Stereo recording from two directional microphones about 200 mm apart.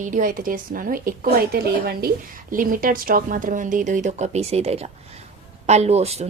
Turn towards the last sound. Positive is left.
turn(degrees=-30)  # may be behind; listen again after turning